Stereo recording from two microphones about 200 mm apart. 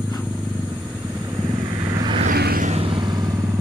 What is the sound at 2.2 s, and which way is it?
Vehicle, 50° right (ahead or behind).